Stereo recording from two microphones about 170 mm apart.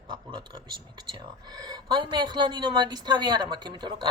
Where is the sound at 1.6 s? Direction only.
25° right (ahead or behind).